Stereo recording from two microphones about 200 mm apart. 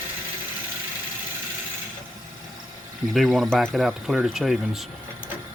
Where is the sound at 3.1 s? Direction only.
Centre (ahead or behind).